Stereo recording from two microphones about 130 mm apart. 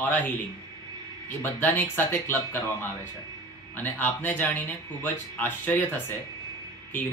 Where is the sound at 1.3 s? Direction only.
15° left (ahead or behind).